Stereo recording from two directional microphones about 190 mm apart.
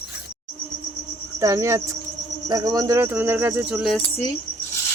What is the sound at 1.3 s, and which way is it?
Speech, 15° right (ahead or behind).